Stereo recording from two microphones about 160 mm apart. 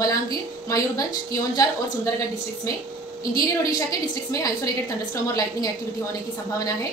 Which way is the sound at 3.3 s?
20° left (ahead or behind).